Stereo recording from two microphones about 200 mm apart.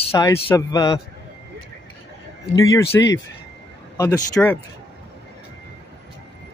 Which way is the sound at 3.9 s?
15° left (ahead or behind).